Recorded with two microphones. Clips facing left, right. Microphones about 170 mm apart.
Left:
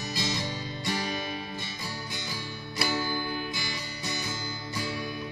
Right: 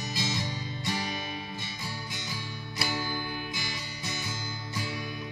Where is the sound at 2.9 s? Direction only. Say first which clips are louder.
Left 3 dB; 10° right (ahead or behind).